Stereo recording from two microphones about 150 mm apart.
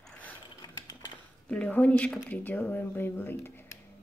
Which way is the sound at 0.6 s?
25° left (ahead or behind).